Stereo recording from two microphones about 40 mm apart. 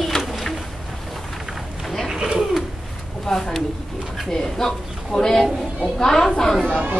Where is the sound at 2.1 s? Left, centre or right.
Centre.